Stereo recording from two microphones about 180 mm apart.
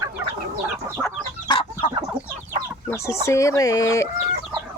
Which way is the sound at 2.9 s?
15° left (ahead or behind).